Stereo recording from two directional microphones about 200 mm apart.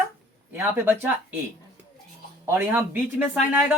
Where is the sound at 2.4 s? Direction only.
10° right (ahead or behind).